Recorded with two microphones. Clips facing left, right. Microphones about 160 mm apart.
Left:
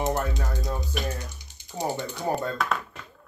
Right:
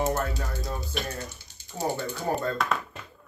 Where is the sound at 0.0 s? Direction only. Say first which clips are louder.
Even; 15° left (ahead or behind).